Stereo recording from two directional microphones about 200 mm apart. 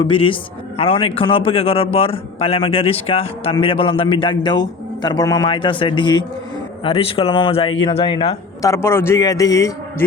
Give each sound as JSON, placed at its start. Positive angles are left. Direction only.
{"t": 0.0, "sound": "a man's voice", "side_deg": 25}